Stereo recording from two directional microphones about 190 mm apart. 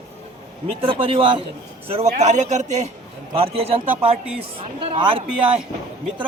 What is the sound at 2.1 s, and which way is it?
A man's voice, 40° right (ahead or behind).